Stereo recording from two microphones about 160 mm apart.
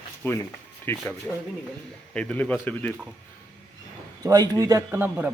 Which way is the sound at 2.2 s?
5° left (ahead or behind).